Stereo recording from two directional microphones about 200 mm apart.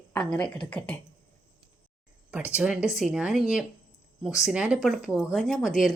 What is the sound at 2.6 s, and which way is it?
Speech, 5° right (ahead or behind).